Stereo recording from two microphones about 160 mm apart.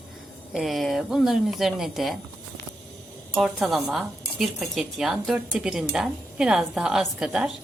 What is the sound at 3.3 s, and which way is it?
Speech, centre (ahead or behind).